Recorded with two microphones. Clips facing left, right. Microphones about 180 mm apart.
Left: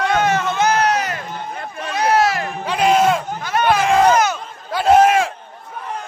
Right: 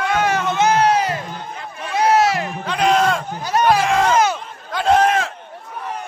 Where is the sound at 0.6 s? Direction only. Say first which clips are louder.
Right 5 dB; 25° right (ahead or behind).